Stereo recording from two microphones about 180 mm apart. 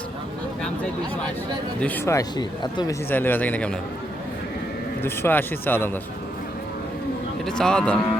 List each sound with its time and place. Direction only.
1.8 s speech: 10° left (ahead or behind)
3.1 s speech: 10° left (ahead or behind)
5.0 s speech: 10° left (ahead or behind)
7.4 s a man's voice: 5° left (ahead or behind)